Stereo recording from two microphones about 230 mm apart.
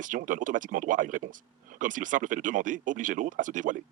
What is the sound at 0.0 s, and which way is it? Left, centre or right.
Speech, right.